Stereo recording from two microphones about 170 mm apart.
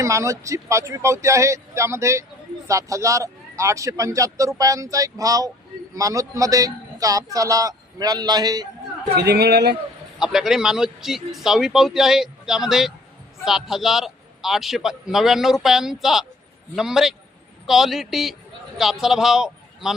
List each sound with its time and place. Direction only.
0.0 s a man's voice: 20° right (ahead or behind)
9.1 s a man's voice: 75° right (ahead or behind)
10.2 s a man's voice: 5° right (ahead or behind)